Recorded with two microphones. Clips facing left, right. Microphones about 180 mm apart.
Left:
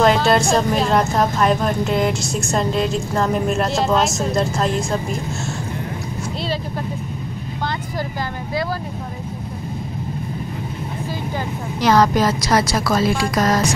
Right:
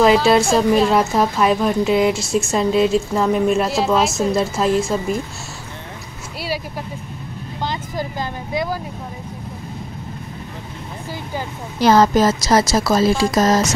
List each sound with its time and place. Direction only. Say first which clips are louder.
0.0 s a woman's voice: right 2 dB; centre (ahead or behind)
11.8 s a woman's voice: right 2 dB; 25° right (ahead or behind)